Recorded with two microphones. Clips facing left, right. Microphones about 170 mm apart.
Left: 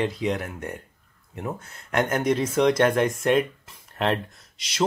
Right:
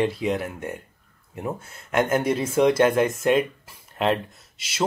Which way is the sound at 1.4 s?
10° right (ahead or behind).